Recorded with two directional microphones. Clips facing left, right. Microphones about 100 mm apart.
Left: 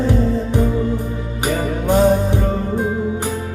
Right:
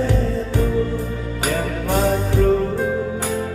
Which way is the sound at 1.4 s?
20° left (ahead or behind).